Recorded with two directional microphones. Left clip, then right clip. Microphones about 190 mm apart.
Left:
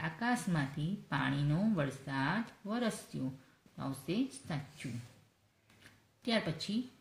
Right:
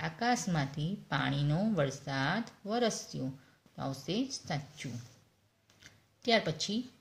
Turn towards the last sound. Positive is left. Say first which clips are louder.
# right 6 dB
turn(degrees=-30)  # may be behind; listen again after turning